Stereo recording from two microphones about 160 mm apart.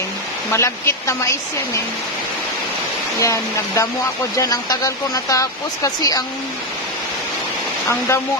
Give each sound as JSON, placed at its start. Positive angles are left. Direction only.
{"t": 0.5, "sound": "speech", "side_deg": 15}
{"t": 3.2, "sound": "speech", "side_deg": 20}
{"t": 7.9, "sound": "speech", "side_deg": 15}